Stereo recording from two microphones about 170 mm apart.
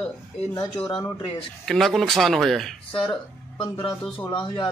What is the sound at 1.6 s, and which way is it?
A man's voice, centre (ahead or behind).